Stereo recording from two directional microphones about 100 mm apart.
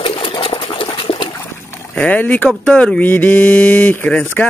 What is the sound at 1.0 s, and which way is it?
Water, 60° left (ahead or behind).